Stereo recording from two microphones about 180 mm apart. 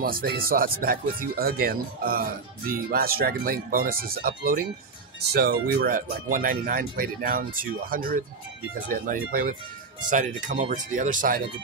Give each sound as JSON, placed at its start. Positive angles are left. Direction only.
{"t": 0.0, "sound": "speech", "side_deg": -55}